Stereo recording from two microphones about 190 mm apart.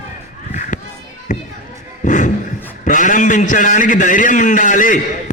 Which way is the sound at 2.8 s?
45° left (ahead or behind).